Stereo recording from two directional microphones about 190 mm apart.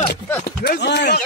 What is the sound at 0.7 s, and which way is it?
Speech, 65° left (ahead or behind).